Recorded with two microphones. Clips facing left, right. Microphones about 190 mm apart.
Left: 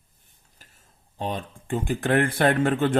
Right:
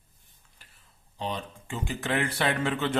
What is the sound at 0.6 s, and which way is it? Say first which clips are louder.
Speech: left 4 dB; 45° left (ahead or behind).